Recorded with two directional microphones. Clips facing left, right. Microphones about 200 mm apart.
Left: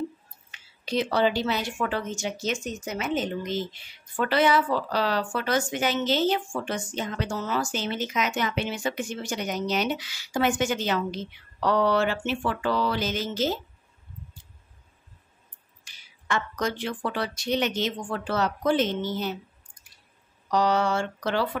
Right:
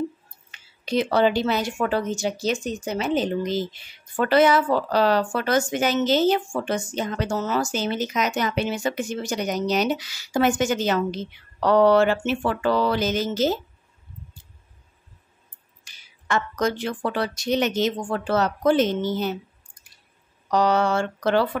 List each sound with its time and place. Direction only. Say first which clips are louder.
0.5 s speech: right 4 dB; 50° right (ahead or behind); by 3.6 s 35° right (ahead or behind)
4.2 s speech: right 4 dB; 45° right (ahead or behind)
15.8 s speech: right 2 dB; 45° right (ahead or behind)
20.5 s speech: right 3 dB; 50° right (ahead or behind)